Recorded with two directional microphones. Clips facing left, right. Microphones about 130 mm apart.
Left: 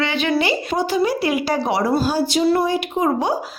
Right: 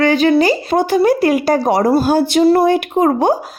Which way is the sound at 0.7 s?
55° right (ahead or behind).